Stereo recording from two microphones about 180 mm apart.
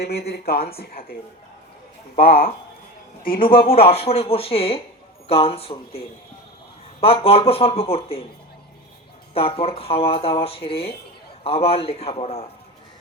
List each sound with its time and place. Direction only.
0.0 s speech: 65° left (ahead or behind)
3.7 s speech: 35° left (ahead or behind)
7.0 s speech: 30° left (ahead or behind)
9.3 s speech: 30° left (ahead or behind)